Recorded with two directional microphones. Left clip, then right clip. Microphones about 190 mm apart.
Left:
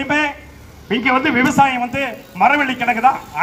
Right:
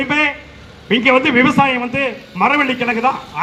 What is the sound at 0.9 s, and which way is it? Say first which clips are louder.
A man's voice: right 3 dB; 15° left (ahead or behind).